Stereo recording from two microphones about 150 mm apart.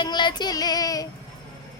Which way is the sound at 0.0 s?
30° left (ahead or behind).